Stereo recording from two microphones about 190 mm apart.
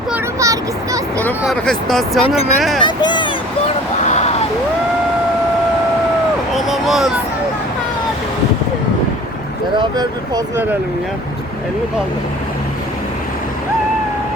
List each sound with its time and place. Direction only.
0.3 s a sound: 15° right (ahead or behind)
1.5 s speech: centre (ahead or behind)
2.8 s speech: 25° left (ahead or behind)
4.0 s vehicle: 35° left (ahead or behind)
6.5 s a sound: centre (ahead or behind)
9.7 s speech: 20° right (ahead or behind)